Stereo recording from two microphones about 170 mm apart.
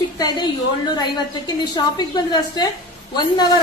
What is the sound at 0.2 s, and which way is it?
A woman's voice, 25° left (ahead or behind).